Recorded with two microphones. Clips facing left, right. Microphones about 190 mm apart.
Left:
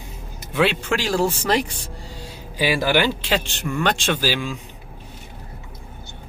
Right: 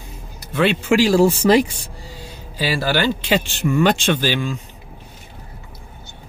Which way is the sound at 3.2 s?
5° right (ahead or behind).